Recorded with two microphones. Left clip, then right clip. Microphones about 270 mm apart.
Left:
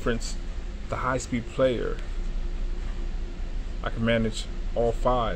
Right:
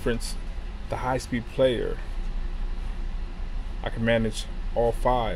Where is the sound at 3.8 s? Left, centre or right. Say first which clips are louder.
Right 1 dB; right.